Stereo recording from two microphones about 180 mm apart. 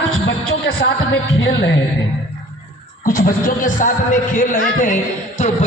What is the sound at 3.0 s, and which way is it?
A man's voice, 45° left (ahead or behind).